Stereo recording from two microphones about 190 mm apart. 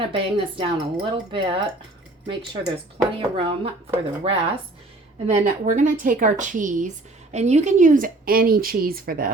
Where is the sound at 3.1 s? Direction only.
25° right (ahead or behind).